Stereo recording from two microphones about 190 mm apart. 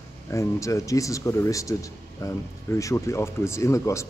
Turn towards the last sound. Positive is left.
turn(degrees=15)  # may be behind; listen again after turning